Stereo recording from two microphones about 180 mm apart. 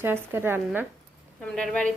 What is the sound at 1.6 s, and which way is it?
Speech, 5° left (ahead or behind).